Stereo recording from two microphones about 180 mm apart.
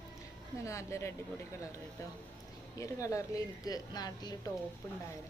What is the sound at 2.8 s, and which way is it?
A woman's voice, 15° left (ahead or behind).